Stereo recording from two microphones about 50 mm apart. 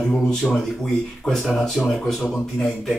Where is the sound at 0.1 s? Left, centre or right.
Centre.